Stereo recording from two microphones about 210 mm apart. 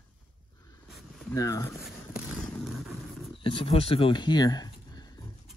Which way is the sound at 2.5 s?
Centre (ahead or behind).